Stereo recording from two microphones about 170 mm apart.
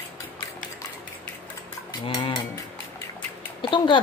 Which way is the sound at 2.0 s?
30° left (ahead or behind).